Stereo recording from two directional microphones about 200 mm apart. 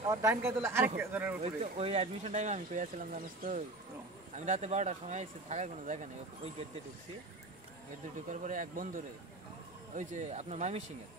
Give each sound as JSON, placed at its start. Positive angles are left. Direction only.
{"t": 0.0, "sound": "speech", "side_deg": -15}
{"t": 1.4, "sound": "speech", "side_deg": -30}
{"t": 8.3, "sound": "speech", "side_deg": -40}